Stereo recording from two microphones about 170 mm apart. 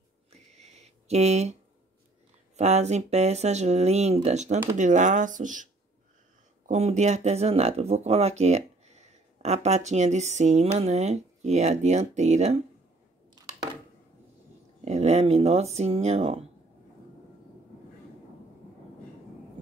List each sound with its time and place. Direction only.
0.3 s a sound: 40° right (ahead or behind)
2.5 s speech: 40° right (ahead or behind)
14.9 s speech: 40° right (ahead or behind)